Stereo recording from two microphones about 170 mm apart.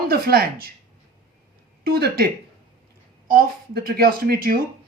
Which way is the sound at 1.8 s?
65° right (ahead or behind).